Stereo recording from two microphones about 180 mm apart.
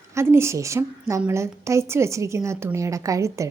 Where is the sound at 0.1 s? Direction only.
15° right (ahead or behind).